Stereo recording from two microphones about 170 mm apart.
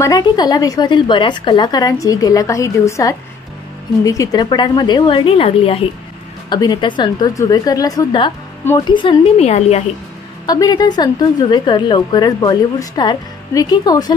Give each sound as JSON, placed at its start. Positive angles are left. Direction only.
{"t": 0.0, "sound": "a woman's voice", "side_deg": 20}
{"t": 10.4, "sound": "a woman's voice", "side_deg": 20}